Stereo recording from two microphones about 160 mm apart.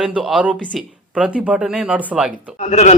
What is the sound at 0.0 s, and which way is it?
Speech, centre (ahead or behind).